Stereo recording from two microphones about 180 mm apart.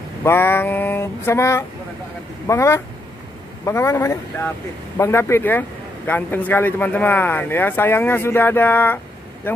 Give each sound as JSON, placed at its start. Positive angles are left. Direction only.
{"t": 0.2, "sound": "speech", "side_deg": 10}